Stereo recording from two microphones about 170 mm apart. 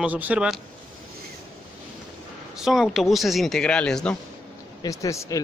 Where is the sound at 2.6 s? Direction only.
Centre (ahead or behind).